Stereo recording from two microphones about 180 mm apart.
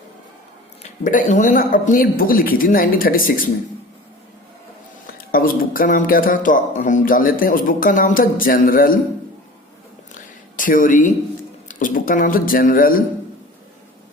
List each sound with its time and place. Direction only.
0.8 s speech: 45° left (ahead or behind)
5.1 s speech: 55° left (ahead or behind)
10.2 s a sound: 50° left (ahead or behind)
11.7 s speech: 50° left (ahead or behind)